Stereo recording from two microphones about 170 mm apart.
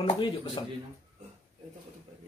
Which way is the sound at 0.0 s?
30° left (ahead or behind).